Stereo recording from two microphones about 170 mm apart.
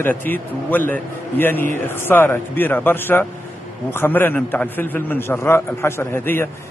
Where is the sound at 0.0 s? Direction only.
10° left (ahead or behind).